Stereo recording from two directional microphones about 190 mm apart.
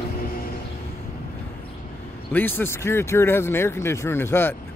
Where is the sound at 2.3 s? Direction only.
10° left (ahead or behind).